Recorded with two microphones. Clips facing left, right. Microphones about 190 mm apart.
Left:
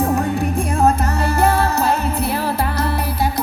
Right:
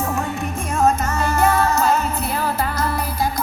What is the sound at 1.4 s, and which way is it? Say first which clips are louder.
Music: even; 35° left (ahead or behind).